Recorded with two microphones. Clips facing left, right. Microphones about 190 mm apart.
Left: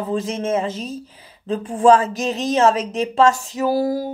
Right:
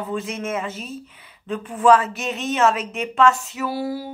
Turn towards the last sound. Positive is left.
turn(degrees=40)  # may be behind; listen again after turning